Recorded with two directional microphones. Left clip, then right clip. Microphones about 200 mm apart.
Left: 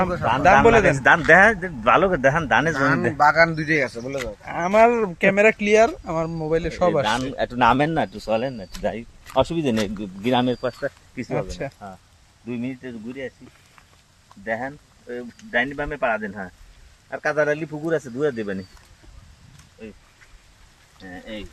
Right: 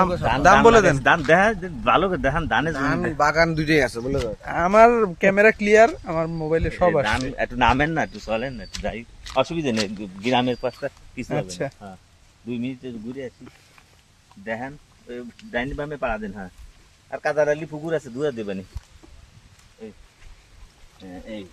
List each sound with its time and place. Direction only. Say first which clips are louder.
0.0 s speech: right 1 dB; 10° right (ahead or behind)
0.9 s speech: left 3 dB; 15° left (ahead or behind)
2.7 s speech: left 3 dB; 15° right (ahead or behind)
3.2 s speech: left 3 dB; 35° right (ahead or behind); by 4.2 s 60° right (ahead or behind)
4.4 s speech: right 2 dB; 20° right (ahead or behind); by 7.1 s centre (ahead or behind)
7.3 s speech: left 2 dB; 15° left (ahead or behind)
11.3 s speech: even; 30° right (ahead or behind)
12.5 s speech: even; 5° right (ahead or behind)
14.4 s speech: left 3 dB; centre (ahead or behind)
17.1 s speech: even; 30° left (ahead or behind)
21.0 s speech: left 1 dB; 10° left (ahead or behind)